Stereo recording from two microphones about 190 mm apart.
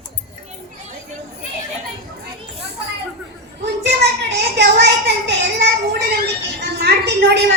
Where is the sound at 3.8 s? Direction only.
65° right (ahead or behind).